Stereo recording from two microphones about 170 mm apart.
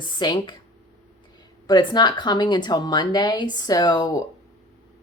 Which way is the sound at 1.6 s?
25° left (ahead or behind).